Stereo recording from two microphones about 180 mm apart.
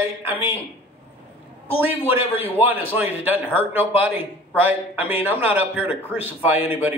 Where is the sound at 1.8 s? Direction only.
10° right (ahead or behind).